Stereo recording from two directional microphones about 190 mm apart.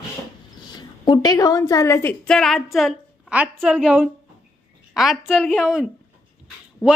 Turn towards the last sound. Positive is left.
turn(degrees=5)  # may be behind; listen again after turning